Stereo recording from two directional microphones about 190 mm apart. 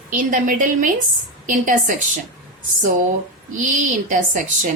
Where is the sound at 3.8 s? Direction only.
40° right (ahead or behind).